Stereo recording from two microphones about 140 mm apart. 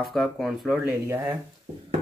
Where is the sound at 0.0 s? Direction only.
Centre (ahead or behind).